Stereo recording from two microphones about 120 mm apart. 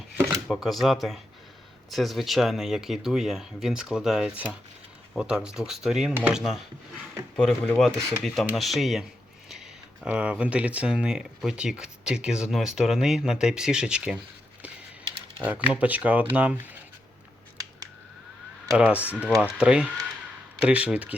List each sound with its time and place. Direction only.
0.4 s speech: centre (ahead or behind)
7.3 s speech: 5° left (ahead or behind)
9.5 s a sound: 5° right (ahead or behind)
10.1 s speech: 10° right (ahead or behind)
15.4 s speech: 10° right (ahead or behind)
18.8 s speech: 10° right (ahead or behind)